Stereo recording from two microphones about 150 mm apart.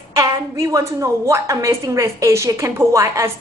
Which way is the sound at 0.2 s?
20° right (ahead or behind).